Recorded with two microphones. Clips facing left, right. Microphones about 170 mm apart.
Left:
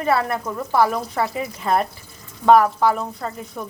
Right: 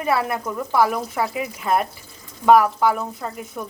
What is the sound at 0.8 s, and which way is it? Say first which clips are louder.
Speech: left 1 dB; 5° right (ahead or behind).